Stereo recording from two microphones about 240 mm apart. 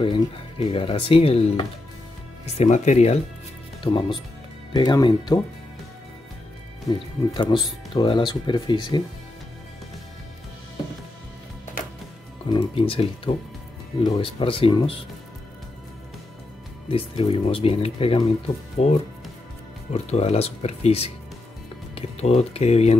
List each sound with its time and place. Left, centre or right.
0.0 s speech: left
6.9 s speech: centre
12.4 s speech: left
16.9 s speech: left